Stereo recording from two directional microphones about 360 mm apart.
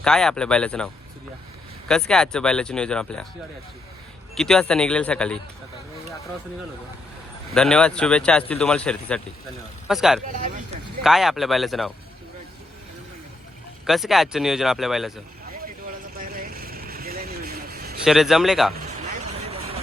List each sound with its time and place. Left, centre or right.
0.0 s speech: centre
1.9 s speech: centre
4.4 s speech: centre
7.5 s speech: centre
13.8 s speech: centre
16.1 s vehicle: right
18.0 s speech: centre